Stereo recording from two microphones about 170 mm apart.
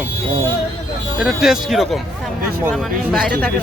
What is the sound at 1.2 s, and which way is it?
Speech, centre (ahead or behind).